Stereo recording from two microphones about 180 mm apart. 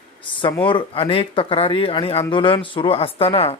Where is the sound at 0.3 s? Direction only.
30° left (ahead or behind).